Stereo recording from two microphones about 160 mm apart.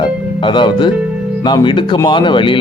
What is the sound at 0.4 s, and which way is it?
Speech, 30° left (ahead or behind).